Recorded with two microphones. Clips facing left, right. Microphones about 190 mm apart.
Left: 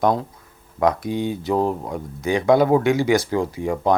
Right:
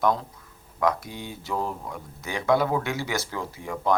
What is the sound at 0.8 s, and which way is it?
Speech, 20° left (ahead or behind).